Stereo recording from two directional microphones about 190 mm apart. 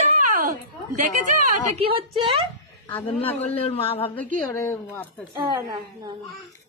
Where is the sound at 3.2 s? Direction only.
35° left (ahead or behind).